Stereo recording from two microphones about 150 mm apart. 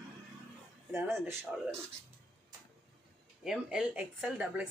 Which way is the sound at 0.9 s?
15° right (ahead or behind).